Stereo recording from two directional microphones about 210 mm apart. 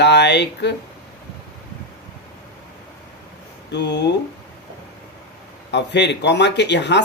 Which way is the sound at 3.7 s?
55° left (ahead or behind).